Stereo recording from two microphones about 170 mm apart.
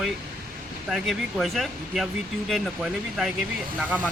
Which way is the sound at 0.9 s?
Centre (ahead or behind).